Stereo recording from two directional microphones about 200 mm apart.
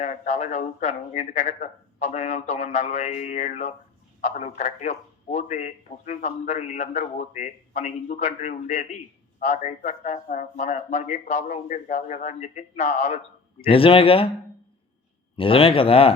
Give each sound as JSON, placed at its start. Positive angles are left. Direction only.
{"t": 0.0, "sound": "a man's voice", "side_deg": 35}
{"t": 15.4, "sound": "speech", "side_deg": 25}